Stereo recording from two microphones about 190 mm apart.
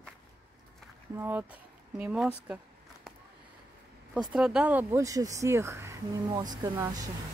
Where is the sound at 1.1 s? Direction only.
10° right (ahead or behind).